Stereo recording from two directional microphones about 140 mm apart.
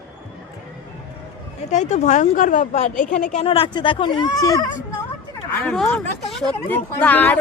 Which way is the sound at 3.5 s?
40° left (ahead or behind).